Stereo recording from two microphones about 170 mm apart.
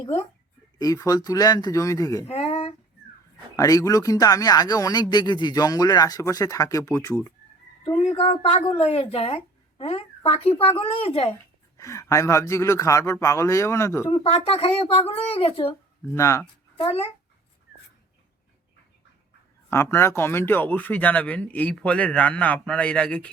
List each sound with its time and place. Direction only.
0.8 s speech: 20° left (ahead or behind)
2.2 s speech: 35° left (ahead or behind)
3.5 s speech: 20° left (ahead or behind)
7.9 s speech: 35° left (ahead or behind)
11.8 s speech: 20° left (ahead or behind)
14.1 s speech: 35° left (ahead or behind)
16.1 s speech: 20° left (ahead or behind)
16.7 s a child's voice: 35° left (ahead or behind)
19.7 s speech: 15° left (ahead or behind)